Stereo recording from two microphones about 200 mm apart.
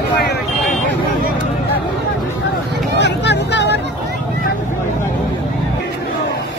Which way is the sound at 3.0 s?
60° left (ahead or behind).